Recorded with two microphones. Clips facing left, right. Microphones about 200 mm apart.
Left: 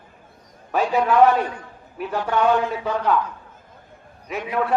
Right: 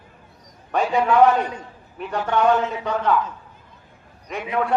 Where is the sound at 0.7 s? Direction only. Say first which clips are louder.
Even; 5° left (ahead or behind).